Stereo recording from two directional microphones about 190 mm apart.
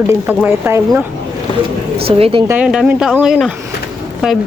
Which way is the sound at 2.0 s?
30° right (ahead or behind).